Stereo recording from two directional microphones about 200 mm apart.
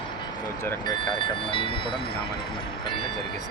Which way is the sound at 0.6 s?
20° left (ahead or behind).